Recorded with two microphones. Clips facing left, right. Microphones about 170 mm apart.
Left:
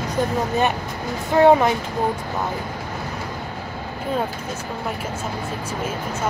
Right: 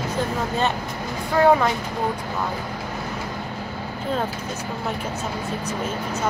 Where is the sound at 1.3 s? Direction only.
25° left (ahead or behind).